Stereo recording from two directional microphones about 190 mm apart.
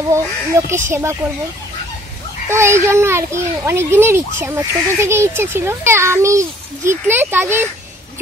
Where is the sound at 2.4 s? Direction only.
15° right (ahead or behind).